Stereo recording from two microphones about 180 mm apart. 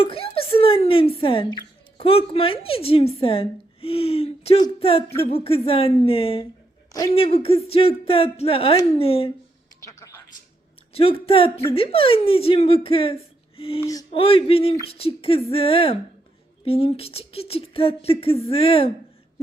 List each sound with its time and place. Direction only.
0.0 s speech: 30° left (ahead or behind)
10.9 s speech: 30° left (ahead or behind)